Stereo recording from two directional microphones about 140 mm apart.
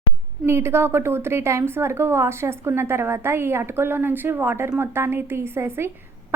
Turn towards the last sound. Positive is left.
turn(degrees=-15)  # may be behind; listen again after turning